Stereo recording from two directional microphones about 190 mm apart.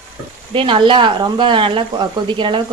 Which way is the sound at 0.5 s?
25° right (ahead or behind).